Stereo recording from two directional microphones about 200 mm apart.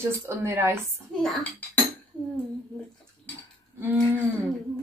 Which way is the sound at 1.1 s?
5° left (ahead or behind).